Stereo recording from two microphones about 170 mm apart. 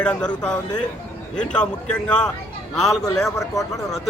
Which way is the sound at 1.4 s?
5° left (ahead or behind).